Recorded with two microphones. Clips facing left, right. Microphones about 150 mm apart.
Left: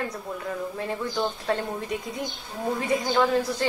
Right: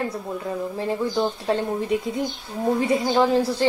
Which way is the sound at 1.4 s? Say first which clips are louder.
Right 4 dB; 30° right (ahead or behind).